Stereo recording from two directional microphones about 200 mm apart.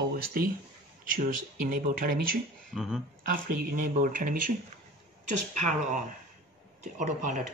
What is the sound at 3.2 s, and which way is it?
Speech, 45° right (ahead or behind).